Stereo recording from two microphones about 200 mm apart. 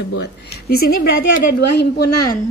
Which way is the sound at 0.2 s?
50° left (ahead or behind).